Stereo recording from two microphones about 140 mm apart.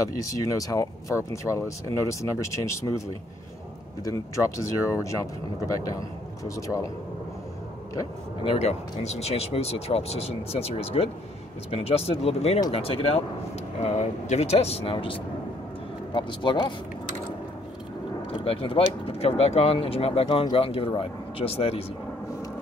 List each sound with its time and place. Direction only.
0.2 s speech: 25° left (ahead or behind)
4.0 s speech: 25° left (ahead or behind)
8.5 s speech: 50° left (ahead or behind)
18.3 s speech: 40° left (ahead or behind)